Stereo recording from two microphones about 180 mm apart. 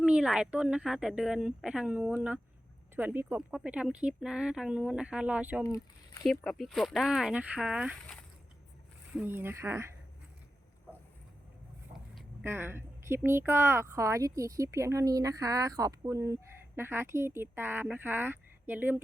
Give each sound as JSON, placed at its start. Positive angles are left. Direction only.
{"t": 0.0, "sound": "speech", "side_deg": -5}
{"t": 5.6, "sound": "speech", "side_deg": 20}
{"t": 6.4, "sound": "speech", "side_deg": 0}
{"t": 9.1, "sound": "speech", "side_deg": -10}
{"t": 12.4, "sound": "speech", "side_deg": -10}